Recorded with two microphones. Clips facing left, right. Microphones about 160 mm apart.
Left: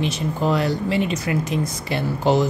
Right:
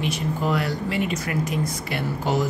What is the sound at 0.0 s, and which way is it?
Speech, 25° left (ahead or behind).